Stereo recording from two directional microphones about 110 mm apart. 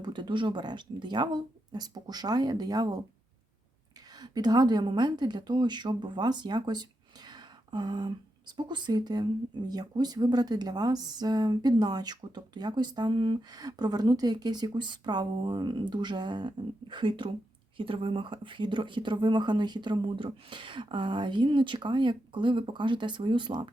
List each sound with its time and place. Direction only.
0.0 s speech: 45° right (ahead or behind)
4.2 s speech: 35° right (ahead or behind)